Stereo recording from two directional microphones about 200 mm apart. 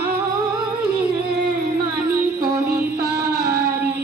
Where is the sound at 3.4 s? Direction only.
50° right (ahead or behind).